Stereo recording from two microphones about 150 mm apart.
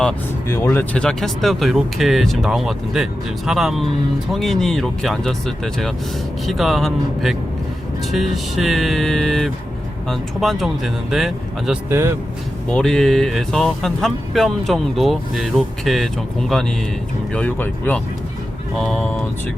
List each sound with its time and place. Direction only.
0.4 s speech: 15° left (ahead or behind); by 11.8 s centre (ahead or behind)
11.9 s speech: 15° right (ahead or behind)
12.6 s speech: 5° left (ahead or behind)